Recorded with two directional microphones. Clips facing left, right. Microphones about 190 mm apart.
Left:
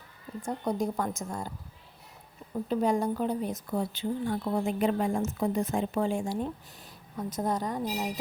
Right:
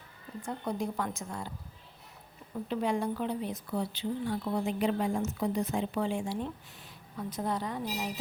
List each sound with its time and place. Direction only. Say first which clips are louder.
0.4 s speech: left 4 dB; 40° left (ahead or behind)
2.6 s speech: left 4 dB; 40° left (ahead or behind)